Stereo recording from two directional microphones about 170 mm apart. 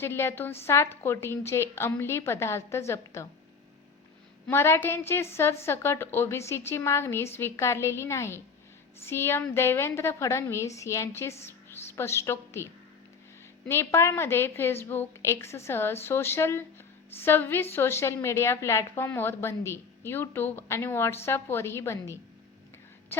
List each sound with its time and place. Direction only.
0.0 s a woman's voice: 15° left (ahead or behind)
4.4 s a woman's voice: 15° left (ahead or behind)
13.7 s a woman's voice: 15° left (ahead or behind)